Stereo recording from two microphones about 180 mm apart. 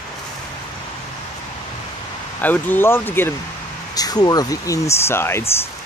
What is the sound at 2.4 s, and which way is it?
Speech, 10° left (ahead or behind).